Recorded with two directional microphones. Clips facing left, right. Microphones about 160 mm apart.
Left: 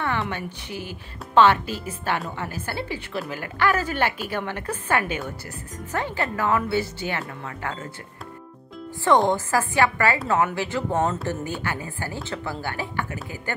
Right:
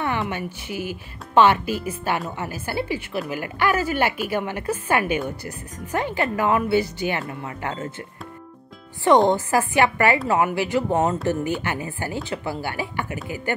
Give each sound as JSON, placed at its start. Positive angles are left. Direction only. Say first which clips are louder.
{"t": 0.2, "sound": "speech", "louder": "right 2 dB", "side_deg": -10}
{"t": 9.0, "sound": "speech", "louder": "right 3 dB", "side_deg": -20}